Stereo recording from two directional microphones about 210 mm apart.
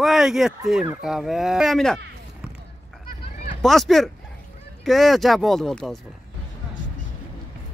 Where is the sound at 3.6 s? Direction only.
Centre (ahead or behind).